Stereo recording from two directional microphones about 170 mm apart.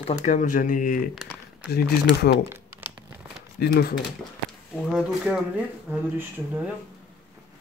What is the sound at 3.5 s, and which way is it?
Speech, 70° left (ahead or behind).